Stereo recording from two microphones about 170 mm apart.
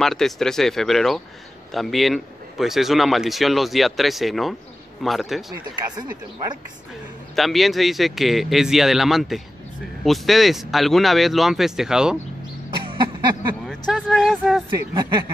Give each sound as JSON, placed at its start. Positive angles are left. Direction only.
{"t": 0.0, "sound": "speech", "side_deg": 0}
{"t": 5.9, "sound": "speech", "side_deg": -25}
{"t": 7.3, "sound": "speech", "side_deg": 0}
{"t": 12.7, "sound": "a sound", "side_deg": -30}
{"t": 13.7, "sound": "speech", "side_deg": 5}
{"t": 15.0, "sound": "speech", "side_deg": -25}